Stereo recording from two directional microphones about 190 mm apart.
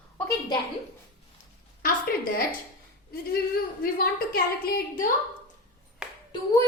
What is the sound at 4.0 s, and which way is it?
A woman's voice, 50° left (ahead or behind).